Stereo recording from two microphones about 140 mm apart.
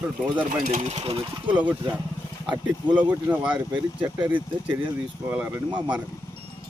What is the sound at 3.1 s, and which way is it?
Speech, 10° right (ahead or behind).